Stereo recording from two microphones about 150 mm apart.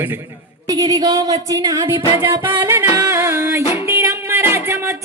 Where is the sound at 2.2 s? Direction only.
15° right (ahead or behind).